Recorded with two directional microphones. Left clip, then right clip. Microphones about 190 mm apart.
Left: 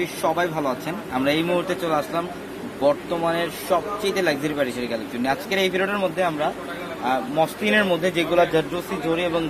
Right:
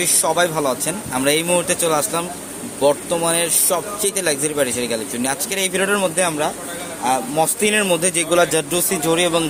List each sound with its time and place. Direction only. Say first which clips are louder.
0.0 s speech: right 5 dB; 45° right (ahead or behind); by 9.4 s 65° right (ahead or behind)